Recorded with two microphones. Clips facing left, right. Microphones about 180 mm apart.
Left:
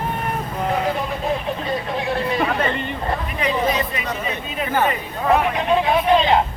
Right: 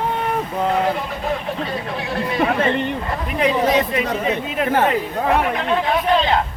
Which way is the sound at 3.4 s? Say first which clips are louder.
Right 5 dB; 75° right (ahead or behind).